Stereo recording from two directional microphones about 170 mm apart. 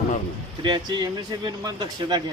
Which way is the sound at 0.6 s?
25° right (ahead or behind).